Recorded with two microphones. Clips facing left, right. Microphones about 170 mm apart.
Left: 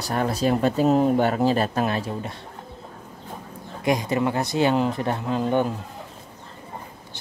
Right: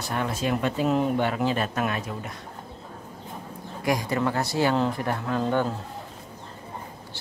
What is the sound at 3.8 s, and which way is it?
Speech, 20° left (ahead or behind).